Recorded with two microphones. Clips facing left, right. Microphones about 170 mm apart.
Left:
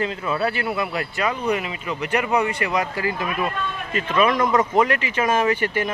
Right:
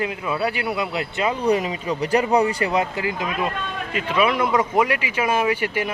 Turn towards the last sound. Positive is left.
turn(degrees=-10)  # may be behind; listen again after turning